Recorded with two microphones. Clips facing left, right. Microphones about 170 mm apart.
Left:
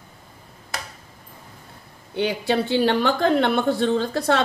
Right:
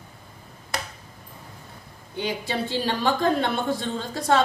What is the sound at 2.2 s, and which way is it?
Speech, 65° left (ahead or behind).